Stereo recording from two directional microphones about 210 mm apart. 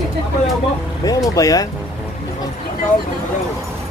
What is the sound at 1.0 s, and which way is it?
Speech, 15° left (ahead or behind).